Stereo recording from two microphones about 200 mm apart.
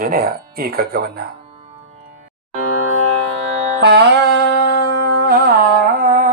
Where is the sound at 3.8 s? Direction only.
55° right (ahead or behind).